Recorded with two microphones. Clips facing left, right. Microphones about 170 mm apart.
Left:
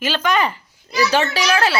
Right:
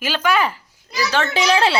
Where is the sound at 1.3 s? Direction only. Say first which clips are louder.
Right 2 dB; 25° right (ahead or behind).